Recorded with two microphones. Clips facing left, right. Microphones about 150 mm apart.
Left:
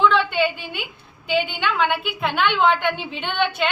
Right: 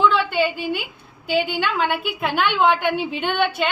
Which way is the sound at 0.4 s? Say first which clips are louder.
Right 2 dB; 5° right (ahead or behind).